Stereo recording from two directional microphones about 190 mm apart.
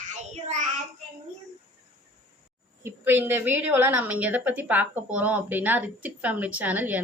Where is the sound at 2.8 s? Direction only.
10° right (ahead or behind).